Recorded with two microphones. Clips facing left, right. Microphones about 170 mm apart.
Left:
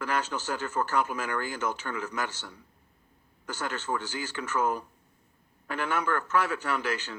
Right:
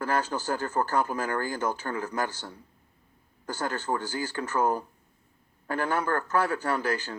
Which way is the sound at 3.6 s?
35° right (ahead or behind).